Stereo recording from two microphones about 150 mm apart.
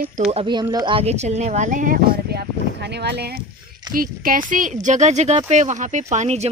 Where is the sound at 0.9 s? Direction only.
45° right (ahead or behind); by 3.3 s 90° right.